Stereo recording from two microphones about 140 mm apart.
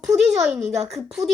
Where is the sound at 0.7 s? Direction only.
50° right (ahead or behind).